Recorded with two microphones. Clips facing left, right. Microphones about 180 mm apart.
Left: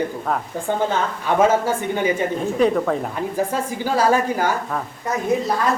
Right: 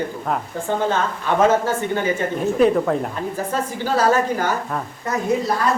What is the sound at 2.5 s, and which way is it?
Speech, centre (ahead or behind).